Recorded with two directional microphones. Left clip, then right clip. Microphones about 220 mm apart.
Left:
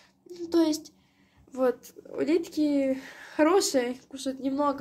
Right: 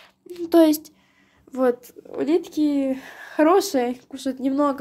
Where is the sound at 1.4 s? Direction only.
25° right (ahead or behind).